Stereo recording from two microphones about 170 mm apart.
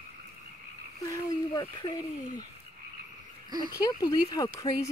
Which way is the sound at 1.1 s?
20° left (ahead or behind).